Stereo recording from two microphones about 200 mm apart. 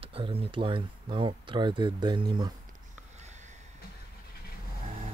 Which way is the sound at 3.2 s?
35° right (ahead or behind).